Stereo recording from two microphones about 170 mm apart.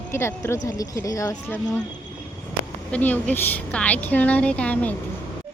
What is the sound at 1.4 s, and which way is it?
Speech, 10° left (ahead or behind).